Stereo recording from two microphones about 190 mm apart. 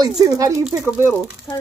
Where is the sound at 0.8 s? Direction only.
5° right (ahead or behind).